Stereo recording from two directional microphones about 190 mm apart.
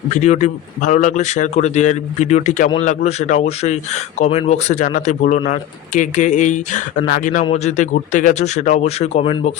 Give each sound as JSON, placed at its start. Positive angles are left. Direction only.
{"t": 0.1, "sound": "a man's voice", "side_deg": 40}